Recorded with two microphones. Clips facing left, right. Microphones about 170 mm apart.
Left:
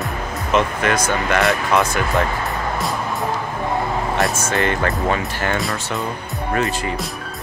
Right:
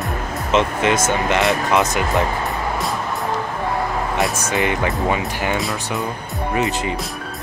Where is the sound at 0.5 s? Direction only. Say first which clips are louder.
Right 1 dB; 20° right (ahead or behind).